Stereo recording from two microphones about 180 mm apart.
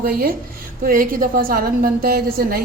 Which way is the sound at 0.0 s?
55° right (ahead or behind).